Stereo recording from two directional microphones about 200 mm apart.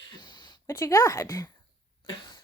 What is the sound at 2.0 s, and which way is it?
Cough, 20° left (ahead or behind).